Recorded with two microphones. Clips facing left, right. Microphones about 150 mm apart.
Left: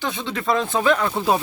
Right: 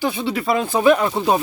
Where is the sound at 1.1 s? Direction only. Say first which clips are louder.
Right 2 dB; 5° right (ahead or behind).